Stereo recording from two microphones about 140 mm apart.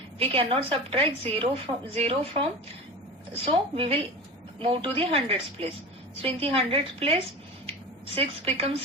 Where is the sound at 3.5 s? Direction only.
40° right (ahead or behind).